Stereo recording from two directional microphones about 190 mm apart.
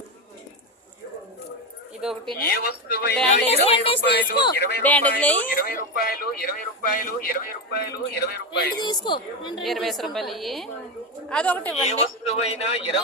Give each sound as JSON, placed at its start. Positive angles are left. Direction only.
{"t": 2.0, "sound": "a woman's voice", "side_deg": -5}
{"t": 2.5, "sound": "speech", "side_deg": 55}
{"t": 3.7, "sound": "a woman's voice", "side_deg": 30}
{"t": 4.0, "sound": "speech", "side_deg": 60}
{"t": 4.8, "sound": "a woman's voice", "side_deg": 10}
{"t": 5.5, "sound": "speech", "side_deg": 50}
{"t": 8.7, "sound": "a woman's voice", "side_deg": 20}
{"t": 9.6, "sound": "a woman's voice", "side_deg": 0}
{"t": 11.9, "sound": "a man's voice", "side_deg": 35}